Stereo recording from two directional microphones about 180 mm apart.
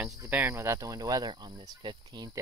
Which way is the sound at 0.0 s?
10° right (ahead or behind).